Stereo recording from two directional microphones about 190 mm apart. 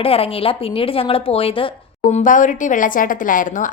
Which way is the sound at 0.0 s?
30° left (ahead or behind).